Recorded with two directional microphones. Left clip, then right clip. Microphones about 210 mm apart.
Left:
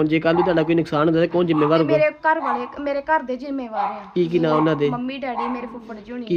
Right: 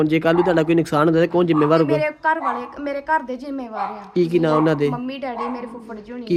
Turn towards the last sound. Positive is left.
turn(degrees=0)  # may be behind; listen again after turning